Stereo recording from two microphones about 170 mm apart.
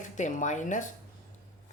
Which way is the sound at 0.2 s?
45° left (ahead or behind).